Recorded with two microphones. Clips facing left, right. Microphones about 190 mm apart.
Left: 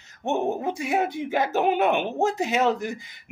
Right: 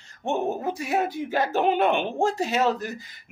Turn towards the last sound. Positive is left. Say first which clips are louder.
# left 1 dB
turn(degrees=15)  # may be behind; listen again after turning